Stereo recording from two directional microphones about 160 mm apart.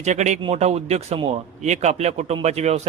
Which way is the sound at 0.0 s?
45° right (ahead or behind).